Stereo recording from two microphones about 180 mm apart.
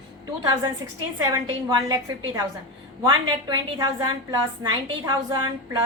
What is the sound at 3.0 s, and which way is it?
A woman's voice, 25° right (ahead or behind).